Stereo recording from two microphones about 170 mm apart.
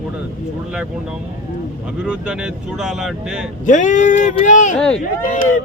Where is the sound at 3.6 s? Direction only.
45° left (ahead or behind).